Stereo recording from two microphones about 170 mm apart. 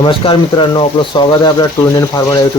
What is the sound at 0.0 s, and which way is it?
Speech, 30° left (ahead or behind).